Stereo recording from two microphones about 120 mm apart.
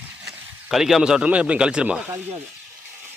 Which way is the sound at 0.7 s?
Centre (ahead or behind).